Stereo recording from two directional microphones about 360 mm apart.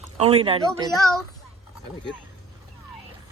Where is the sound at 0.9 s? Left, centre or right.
Centre.